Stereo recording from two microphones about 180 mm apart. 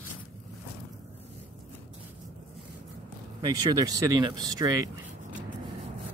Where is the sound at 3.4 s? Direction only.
20° right (ahead or behind).